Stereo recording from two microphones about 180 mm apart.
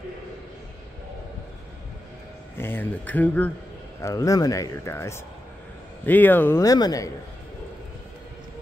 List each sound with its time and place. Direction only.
2.5 s speech: 10° left (ahead or behind)